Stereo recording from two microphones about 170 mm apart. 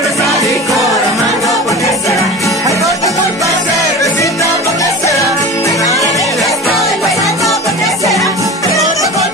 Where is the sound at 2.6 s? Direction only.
20° right (ahead or behind).